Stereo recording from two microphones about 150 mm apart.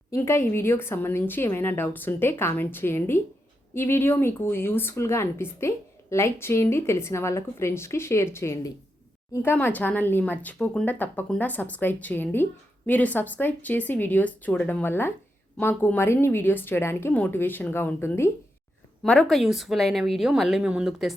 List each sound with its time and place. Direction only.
0.1 s speech: 15° left (ahead or behind); by 21.1 s 5° right (ahead or behind)